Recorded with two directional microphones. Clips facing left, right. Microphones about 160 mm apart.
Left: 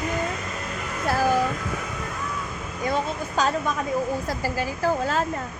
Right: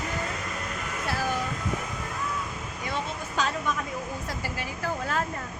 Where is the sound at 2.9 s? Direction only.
40° left (ahead or behind).